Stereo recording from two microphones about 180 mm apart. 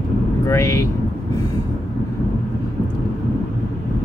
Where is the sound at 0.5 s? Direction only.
15° left (ahead or behind).